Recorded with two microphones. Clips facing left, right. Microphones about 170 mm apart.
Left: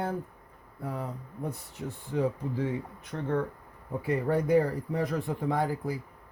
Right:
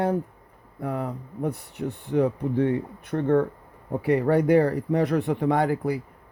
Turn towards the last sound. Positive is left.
turn(degrees=-75)  # may be behind; listen again after turning